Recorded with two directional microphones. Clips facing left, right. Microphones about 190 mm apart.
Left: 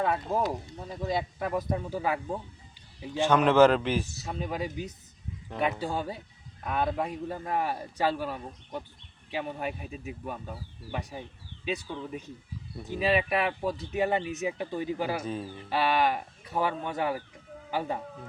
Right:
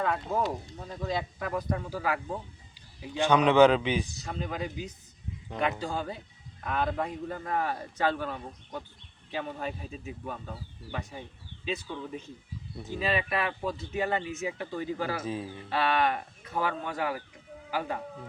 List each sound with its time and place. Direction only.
0.0 s speech: 10° left (ahead or behind)
3.2 s a man's voice: 5° left (ahead or behind)
5.9 s speech: 15° left (ahead or behind)
15.2 s a man's voice: 5° right (ahead or behind)
15.7 s speech: 10° left (ahead or behind)
16.5 s speech: 20° left (ahead or behind)